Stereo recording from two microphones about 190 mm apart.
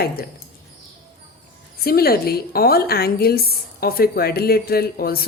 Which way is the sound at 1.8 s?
55° left (ahead or behind).